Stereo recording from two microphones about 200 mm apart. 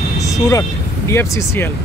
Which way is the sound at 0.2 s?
15° left (ahead or behind).